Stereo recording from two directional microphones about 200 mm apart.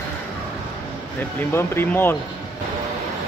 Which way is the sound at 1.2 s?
10° left (ahead or behind).